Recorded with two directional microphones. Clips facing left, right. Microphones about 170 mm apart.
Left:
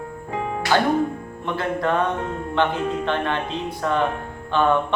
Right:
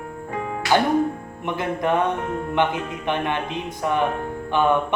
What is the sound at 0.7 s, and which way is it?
Speech, 15° right (ahead or behind).